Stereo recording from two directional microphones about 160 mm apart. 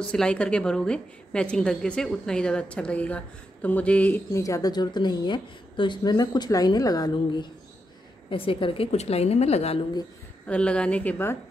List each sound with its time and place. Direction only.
0.0 s a woman's voice: 5° left (ahead or behind); by 7.4 s 25° left (ahead or behind)
8.3 s a woman's voice: 35° left (ahead or behind)
10.4 s a woman's voice: 5° left (ahead or behind)